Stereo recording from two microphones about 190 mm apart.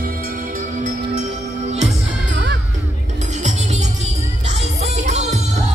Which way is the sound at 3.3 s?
40° right (ahead or behind).